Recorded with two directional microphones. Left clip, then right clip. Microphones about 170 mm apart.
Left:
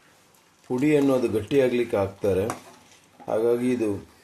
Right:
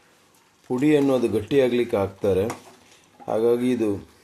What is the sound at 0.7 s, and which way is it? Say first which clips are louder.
Speech: right 1 dB; 20° right (ahead or behind).